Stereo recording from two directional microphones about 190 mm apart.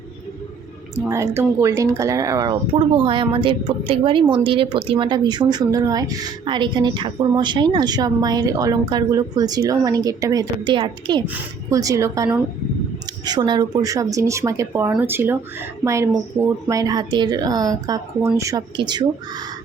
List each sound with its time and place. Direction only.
1.0 s speech: 15° right (ahead or behind)